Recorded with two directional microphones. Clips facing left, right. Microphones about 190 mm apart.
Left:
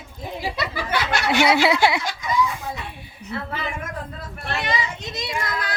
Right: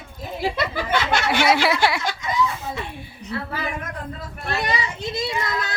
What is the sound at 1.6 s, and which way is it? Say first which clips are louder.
Speech: left 2 dB; 20° left (ahead or behind).